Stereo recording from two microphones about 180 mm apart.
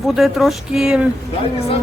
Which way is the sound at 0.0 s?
Centre (ahead or behind).